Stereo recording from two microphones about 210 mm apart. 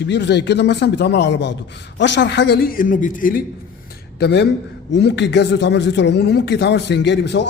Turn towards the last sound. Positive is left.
turn(degrees=55)  # may be behind; listen again after turning